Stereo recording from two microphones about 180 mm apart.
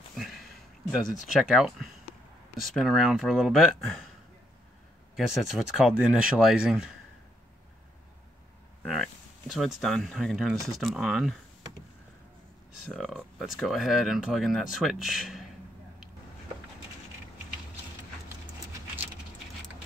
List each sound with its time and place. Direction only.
0.1 s a sound: centre (ahead or behind)
0.9 s speech: 5° right (ahead or behind)
5.1 s speech: centre (ahead or behind)
8.8 s speech: centre (ahead or behind)
12.8 s speech: 5° left (ahead or behind)